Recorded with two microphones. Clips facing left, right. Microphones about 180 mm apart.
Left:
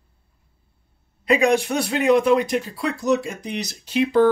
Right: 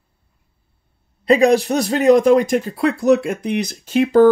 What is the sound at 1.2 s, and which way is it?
A man's voice, 35° right (ahead or behind).